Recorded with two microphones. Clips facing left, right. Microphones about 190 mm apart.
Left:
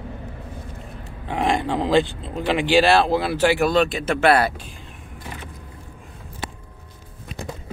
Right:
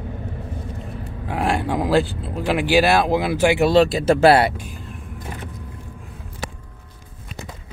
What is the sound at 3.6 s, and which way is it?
Speech, 30° right (ahead or behind).